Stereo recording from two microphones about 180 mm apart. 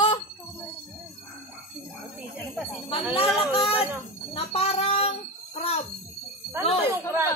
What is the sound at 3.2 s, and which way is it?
Speech, centre (ahead or behind).